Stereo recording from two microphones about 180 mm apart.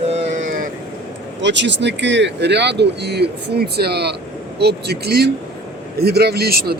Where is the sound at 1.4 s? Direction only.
80° right; by 6.8 s 60° right (ahead or behind).